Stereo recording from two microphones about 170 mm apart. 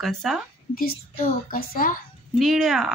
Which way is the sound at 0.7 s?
60° left (ahead or behind).